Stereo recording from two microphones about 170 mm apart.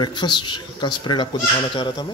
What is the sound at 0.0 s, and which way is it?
Speech, 25° left (ahead or behind).